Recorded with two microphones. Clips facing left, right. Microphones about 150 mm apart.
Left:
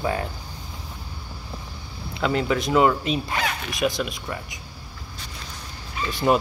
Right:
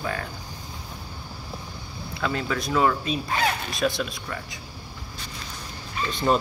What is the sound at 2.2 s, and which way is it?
Speech, 20° left (ahead or behind).